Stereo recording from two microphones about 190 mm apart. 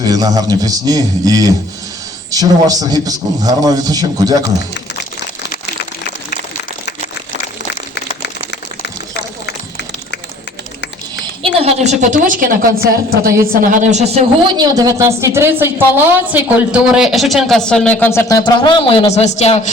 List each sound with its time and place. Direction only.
0.1 s a man's voice: 20° right (ahead or behind)
11.4 s a woman's voice: 35° right (ahead or behind); by 19.7 s 35° left (ahead or behind)